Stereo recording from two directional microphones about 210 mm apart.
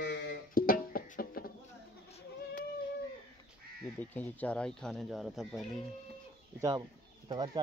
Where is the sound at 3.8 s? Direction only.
5° left (ahead or behind).